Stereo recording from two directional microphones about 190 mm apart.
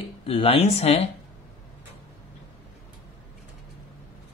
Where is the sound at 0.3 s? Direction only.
30° left (ahead or behind).